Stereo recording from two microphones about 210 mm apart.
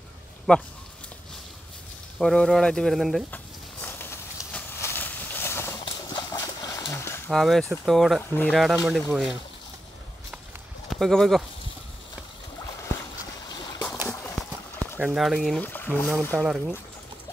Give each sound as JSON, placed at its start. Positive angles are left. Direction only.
{"t": 0.5, "sound": "speech", "side_deg": 5}
{"t": 2.1, "sound": "speech", "side_deg": 0}
{"t": 3.8, "sound": "a sound", "side_deg": 10}
{"t": 5.9, "sound": "horse", "side_deg": 20}
{"t": 7.2, "sound": "speech", "side_deg": 0}
{"t": 10.9, "sound": "speech", "side_deg": 0}
{"t": 12.6, "sound": "boat", "side_deg": 15}
{"t": 14.0, "sound": "clip-clop", "side_deg": 10}
{"t": 15.0, "sound": "speech", "side_deg": 0}
{"t": 16.4, "sound": "speech", "side_deg": -5}